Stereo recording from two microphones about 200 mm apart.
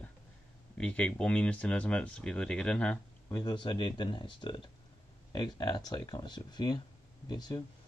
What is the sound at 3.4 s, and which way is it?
Speech, 20° left (ahead or behind).